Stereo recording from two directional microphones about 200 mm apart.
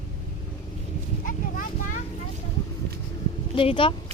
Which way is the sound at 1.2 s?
40° left (ahead or behind).